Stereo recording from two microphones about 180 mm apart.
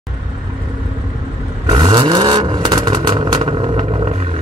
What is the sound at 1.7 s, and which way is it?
Vehicle, 25° right (ahead or behind).